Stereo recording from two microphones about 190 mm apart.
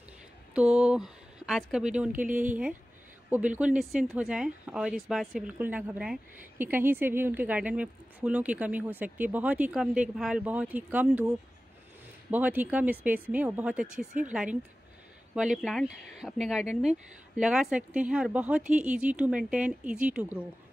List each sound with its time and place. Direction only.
0.6 s a sound: 5° right (ahead or behind)
1.7 s a woman's voice: 5° right (ahead or behind)
2.1 s speech: 40° right (ahead or behind)
3.3 s a woman's voice: 10° right (ahead or behind)